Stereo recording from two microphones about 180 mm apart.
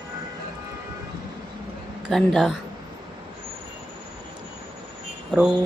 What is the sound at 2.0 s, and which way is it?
Speech, centre (ahead or behind).